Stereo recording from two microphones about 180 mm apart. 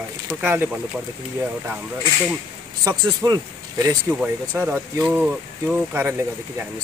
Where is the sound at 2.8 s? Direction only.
20° right (ahead or behind).